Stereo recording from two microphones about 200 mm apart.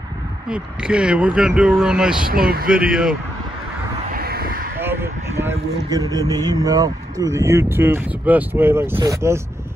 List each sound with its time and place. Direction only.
0.5 s speech: 5° right (ahead or behind)
2.2 s speech: 45° right (ahead or behind)
2.9 s speech: 5° right (ahead or behind)
4.1 s vehicle: 50° right (ahead or behind)
4.7 s a man's voice: 10° right (ahead or behind)